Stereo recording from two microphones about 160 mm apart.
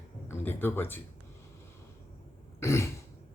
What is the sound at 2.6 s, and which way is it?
Throat clearing, 15° left (ahead or behind).